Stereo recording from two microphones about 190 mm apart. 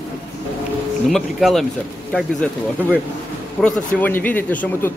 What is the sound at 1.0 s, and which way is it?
Speech, centre (ahead or behind).